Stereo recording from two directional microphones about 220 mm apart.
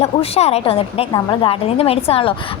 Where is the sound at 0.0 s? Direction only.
30° left (ahead or behind).